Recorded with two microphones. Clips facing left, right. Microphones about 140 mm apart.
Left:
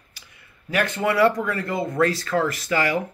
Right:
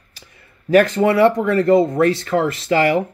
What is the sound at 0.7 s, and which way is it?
Speech, 35° right (ahead or behind).